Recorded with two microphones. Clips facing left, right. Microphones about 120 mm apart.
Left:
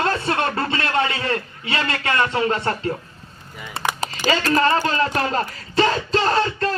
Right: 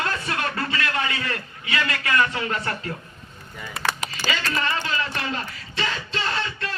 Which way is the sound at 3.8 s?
30° left (ahead or behind).